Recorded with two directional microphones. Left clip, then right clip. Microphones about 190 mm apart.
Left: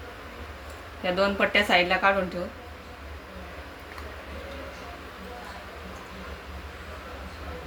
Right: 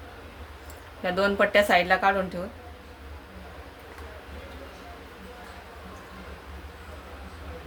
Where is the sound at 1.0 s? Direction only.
60° right (ahead or behind).